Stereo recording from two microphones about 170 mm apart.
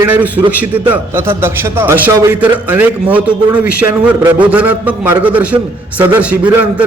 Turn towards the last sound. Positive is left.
turn(degrees=-10)  # may be behind; listen again after turning